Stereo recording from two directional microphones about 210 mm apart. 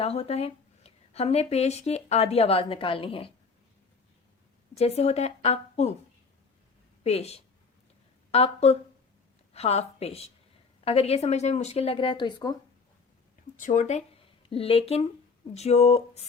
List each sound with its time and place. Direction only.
0.0 s speech: 30° left (ahead or behind)
4.7 s a woman's voice: 30° left (ahead or behind)
7.0 s a woman's voice: 30° left (ahead or behind)
13.6 s a woman's voice: 35° left (ahead or behind)